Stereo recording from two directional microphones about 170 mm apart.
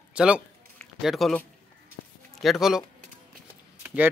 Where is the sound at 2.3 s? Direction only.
Centre (ahead or behind).